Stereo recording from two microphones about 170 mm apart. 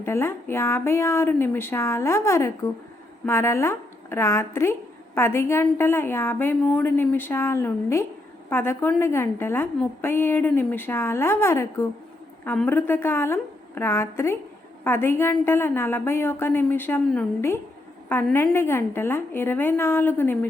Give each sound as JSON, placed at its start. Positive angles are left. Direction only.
{"t": 0.0, "sound": "a woman's voice", "side_deg": 15}